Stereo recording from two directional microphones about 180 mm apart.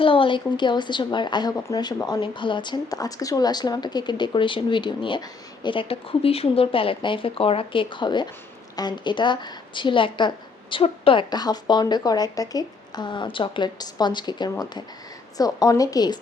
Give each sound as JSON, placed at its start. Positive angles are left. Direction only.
{"t": 0.0, "sound": "a woman's voice", "side_deg": 30}